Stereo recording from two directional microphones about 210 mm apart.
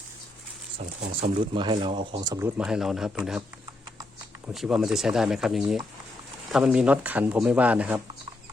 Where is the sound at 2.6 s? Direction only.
5° right (ahead or behind).